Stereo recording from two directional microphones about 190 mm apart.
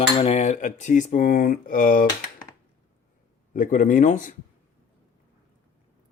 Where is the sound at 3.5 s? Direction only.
45° left (ahead or behind).